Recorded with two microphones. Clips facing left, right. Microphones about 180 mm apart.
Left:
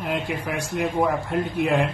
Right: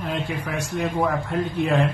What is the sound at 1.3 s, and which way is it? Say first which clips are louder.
Speech: even; 5° left (ahead or behind).